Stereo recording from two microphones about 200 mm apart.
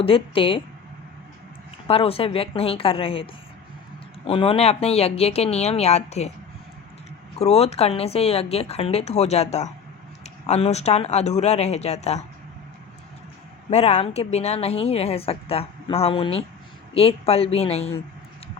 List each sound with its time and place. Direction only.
0.0 s a woman's voice: 25° left (ahead or behind)
1.9 s a woman's voice: 30° left (ahead or behind)
4.3 s a woman's voice: 30° left (ahead or behind)
7.3 s a woman's voice: 30° left (ahead or behind)
13.7 s a woman's voice: 30° left (ahead or behind)